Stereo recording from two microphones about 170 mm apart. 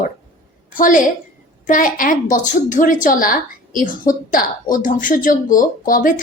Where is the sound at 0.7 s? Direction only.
50° left (ahead or behind).